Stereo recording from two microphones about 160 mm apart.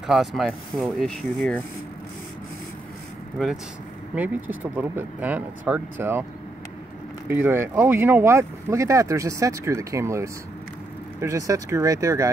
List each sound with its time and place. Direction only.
0.0 s speech: centre (ahead or behind)
4.1 s speech: 10° right (ahead or behind)
7.2 s speech: 15° right (ahead or behind)